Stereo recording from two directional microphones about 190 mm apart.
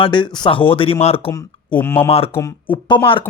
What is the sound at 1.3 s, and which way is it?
Speech, 10° left (ahead or behind).